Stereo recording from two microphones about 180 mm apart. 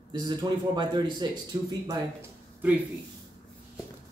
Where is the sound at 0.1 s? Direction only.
25° right (ahead or behind).